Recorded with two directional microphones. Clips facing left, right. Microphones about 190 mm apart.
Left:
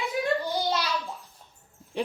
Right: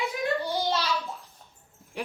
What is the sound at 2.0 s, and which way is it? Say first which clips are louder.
Speech: left 5 dB; 25° left (ahead or behind).